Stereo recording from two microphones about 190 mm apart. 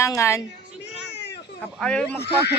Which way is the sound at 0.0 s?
15° left (ahead or behind).